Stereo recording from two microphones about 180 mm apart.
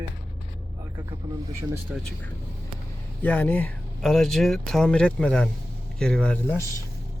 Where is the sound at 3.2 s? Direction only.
10° left (ahead or behind).